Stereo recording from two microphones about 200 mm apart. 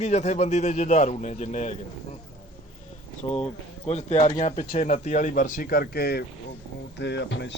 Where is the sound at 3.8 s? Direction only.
35° left (ahead or behind); by 7.5 s 65° left (ahead or behind).